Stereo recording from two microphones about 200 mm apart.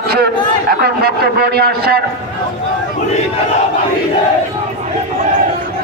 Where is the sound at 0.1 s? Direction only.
50° right (ahead or behind).